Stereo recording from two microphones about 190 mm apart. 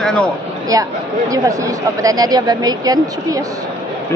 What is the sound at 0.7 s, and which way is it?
Speech, 20° right (ahead or behind).